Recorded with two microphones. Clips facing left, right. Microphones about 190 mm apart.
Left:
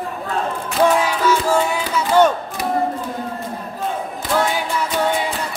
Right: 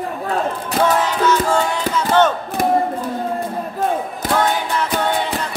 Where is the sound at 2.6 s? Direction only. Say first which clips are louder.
Right 6 dB; 50° right (ahead or behind).